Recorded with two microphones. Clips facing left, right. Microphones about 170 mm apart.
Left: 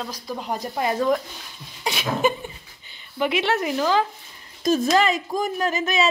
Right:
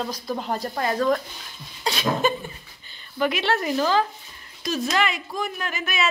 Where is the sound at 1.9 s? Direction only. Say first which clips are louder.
Even; 15° left (ahead or behind).